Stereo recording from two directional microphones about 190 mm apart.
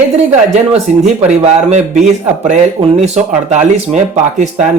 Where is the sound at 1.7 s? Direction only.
40° right (ahead or behind).